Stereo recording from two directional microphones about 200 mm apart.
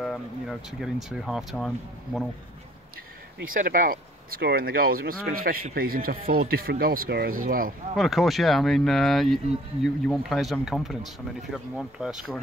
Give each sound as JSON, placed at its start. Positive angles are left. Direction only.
{"t": 0.0, "sound": "speech", "side_deg": 0}
{"t": 3.3, "sound": "speech", "side_deg": -45}
{"t": 7.9, "sound": "speech", "side_deg": 0}